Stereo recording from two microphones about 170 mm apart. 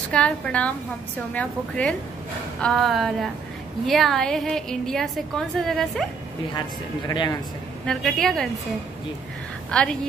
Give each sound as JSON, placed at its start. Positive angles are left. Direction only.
{"t": 0.1, "sound": "a woman's voice", "side_deg": 5}
{"t": 7.1, "sound": "speech", "side_deg": 20}
{"t": 7.8, "sound": "a woman's voice", "side_deg": 0}
{"t": 9.7, "sound": "a woman's voice", "side_deg": 5}